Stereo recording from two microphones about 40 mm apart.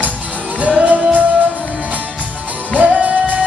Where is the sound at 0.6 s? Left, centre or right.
Right.